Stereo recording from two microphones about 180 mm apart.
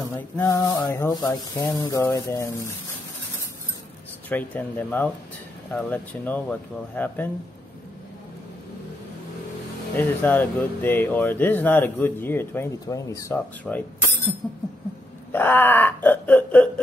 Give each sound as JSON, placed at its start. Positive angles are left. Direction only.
{"t": 0.4, "sound": "speech", "side_deg": 15}
{"t": 4.3, "sound": "speech", "side_deg": 10}
{"t": 9.9, "sound": "speech", "side_deg": 10}
{"t": 15.3, "sound": "speech", "side_deg": 10}